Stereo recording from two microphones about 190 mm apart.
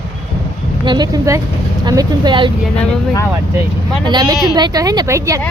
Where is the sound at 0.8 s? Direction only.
20° right (ahead or behind).